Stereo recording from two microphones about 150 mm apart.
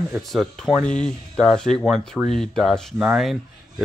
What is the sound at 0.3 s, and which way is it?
Speech, centre (ahead or behind).